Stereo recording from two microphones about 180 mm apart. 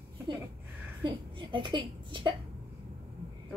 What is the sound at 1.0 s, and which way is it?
A woman's voice, 25° right (ahead or behind).